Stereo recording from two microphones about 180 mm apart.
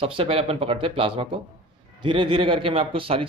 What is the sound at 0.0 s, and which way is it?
Speech, 30° right (ahead or behind).